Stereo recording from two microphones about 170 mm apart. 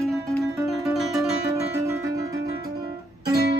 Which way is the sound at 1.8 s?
20° right (ahead or behind).